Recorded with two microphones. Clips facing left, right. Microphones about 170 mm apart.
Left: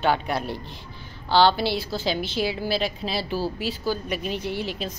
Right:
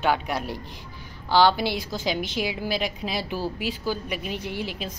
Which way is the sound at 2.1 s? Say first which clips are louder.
Left 2 dB; 30° left (ahead or behind).